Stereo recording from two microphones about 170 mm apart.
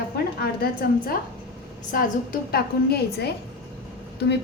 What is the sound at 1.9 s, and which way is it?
A woman's voice, 55° left (ahead or behind).